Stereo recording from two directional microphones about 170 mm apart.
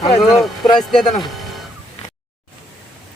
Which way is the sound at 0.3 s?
Centre (ahead or behind).